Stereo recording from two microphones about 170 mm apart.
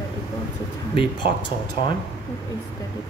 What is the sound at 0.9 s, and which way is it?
Speech, 30° left (ahead or behind).